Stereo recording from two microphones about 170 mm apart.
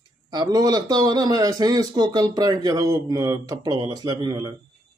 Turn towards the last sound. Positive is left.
turn(degrees=-25)  # may be behind; listen again after turning